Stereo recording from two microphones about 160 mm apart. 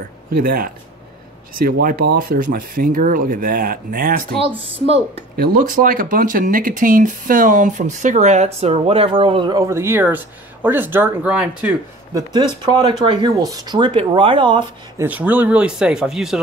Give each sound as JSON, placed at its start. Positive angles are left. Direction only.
{"t": 0.4, "sound": "speech", "side_deg": -70}
{"t": 4.6, "sound": "speech", "side_deg": -35}
{"t": 5.3, "sound": "speech", "side_deg": -70}
{"t": 12.1, "sound": "speech", "side_deg": -25}
{"t": 15.0, "sound": "speech", "side_deg": -10}